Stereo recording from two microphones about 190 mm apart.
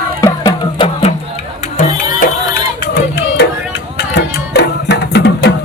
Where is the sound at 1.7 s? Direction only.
50° left (ahead or behind).